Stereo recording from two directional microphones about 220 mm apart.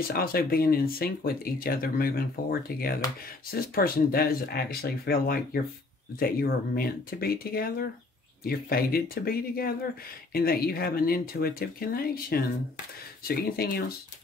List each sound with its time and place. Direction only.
0.1 s speech: 45° left (ahead or behind)